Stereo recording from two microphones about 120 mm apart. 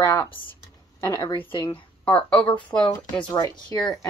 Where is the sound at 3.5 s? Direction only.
35° left (ahead or behind).